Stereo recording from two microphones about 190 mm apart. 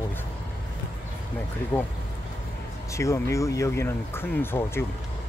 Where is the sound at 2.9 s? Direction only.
15° left (ahead or behind).